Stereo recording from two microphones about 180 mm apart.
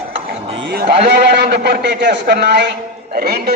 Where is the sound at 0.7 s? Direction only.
60° right (ahead or behind).